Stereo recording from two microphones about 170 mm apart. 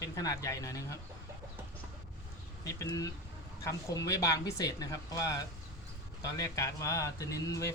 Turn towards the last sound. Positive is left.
turn(degrees=20)  # may be behind; listen again after turning